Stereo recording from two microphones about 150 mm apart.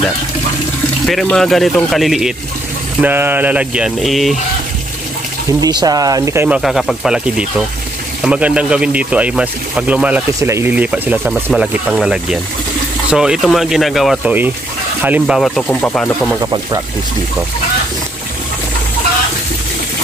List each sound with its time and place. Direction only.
1.0 s speech: 5° left (ahead or behind)
3.0 s speech: 15° right (ahead or behind)
5.5 s speech: 25° right (ahead or behind)
6.6 s speech: centre (ahead or behind)
15.0 s speech: 10° right (ahead or behind)
15.3 s speech: centre (ahead or behind)
16.3 s speech: 25° right (ahead or behind)